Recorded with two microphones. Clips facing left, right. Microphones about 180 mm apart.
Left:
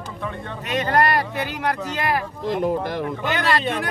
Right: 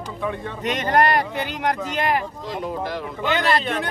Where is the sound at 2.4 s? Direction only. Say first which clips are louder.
Left 5 dB; 50° left (ahead or behind).